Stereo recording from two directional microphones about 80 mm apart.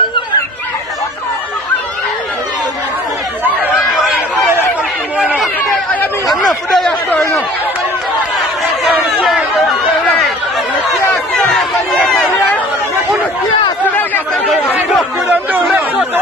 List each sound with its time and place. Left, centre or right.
6.2 s a sound: centre
10.9 s chatter: centre
15.2 s chatter: right